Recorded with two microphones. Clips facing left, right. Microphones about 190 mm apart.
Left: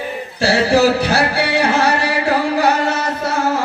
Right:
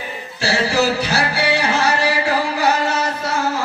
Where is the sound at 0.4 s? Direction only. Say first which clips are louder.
Left 5 dB; 55° left (ahead or behind).